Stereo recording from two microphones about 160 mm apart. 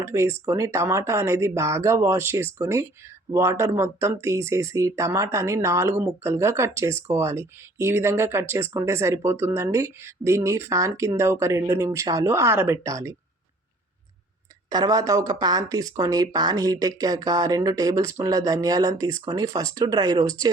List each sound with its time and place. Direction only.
0.0 s speech: 15° right (ahead or behind)
14.7 s speech: 25° right (ahead or behind)